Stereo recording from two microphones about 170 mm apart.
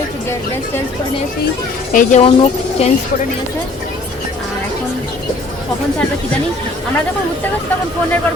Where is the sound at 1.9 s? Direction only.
45° left (ahead or behind).